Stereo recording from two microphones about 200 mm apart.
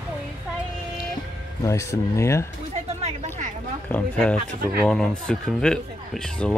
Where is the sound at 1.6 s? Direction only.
15° left (ahead or behind).